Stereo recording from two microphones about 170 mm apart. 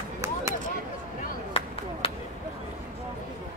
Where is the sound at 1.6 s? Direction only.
35° left (ahead or behind).